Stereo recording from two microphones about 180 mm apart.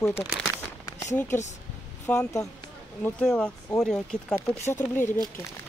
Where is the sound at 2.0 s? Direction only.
10° left (ahead or behind).